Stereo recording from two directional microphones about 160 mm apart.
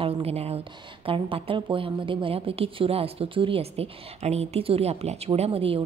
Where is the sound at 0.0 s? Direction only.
40° right (ahead or behind).